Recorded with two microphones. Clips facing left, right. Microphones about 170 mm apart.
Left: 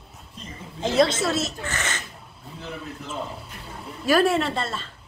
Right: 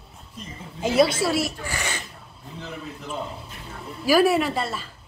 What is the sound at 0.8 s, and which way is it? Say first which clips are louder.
Speech: right 1 dB; 10° right (ahead or behind).